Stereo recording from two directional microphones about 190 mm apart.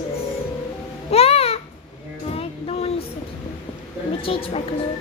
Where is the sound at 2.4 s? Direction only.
30° left (ahead or behind).